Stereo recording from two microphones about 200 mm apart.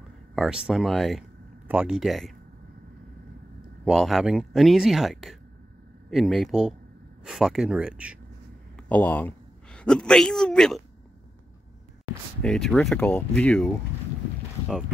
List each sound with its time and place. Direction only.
0.4 s speech: 5° right (ahead or behind)
3.8 s speech: centre (ahead or behind)
8.7 s a woman's voice: 5° left (ahead or behind)
12.4 s speech: 5° left (ahead or behind)